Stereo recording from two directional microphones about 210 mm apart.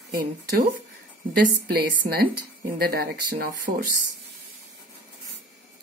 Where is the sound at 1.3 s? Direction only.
45° right (ahead or behind).